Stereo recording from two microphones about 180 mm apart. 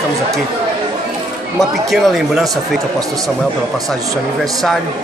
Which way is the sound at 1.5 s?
Centre (ahead or behind).